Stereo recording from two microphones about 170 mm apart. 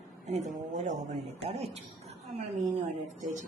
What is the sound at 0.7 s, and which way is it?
Speech, 45° right (ahead or behind).